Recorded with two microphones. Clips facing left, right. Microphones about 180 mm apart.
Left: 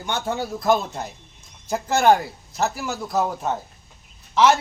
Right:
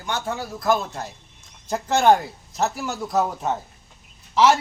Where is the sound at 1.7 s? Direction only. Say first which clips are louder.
Even; 5° left (ahead or behind).